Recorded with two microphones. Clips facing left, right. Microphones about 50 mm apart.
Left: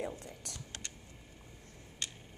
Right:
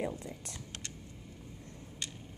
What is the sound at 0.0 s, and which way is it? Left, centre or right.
Speech, centre.